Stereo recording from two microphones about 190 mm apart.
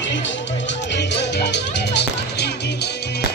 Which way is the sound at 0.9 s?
65° left (ahead or behind).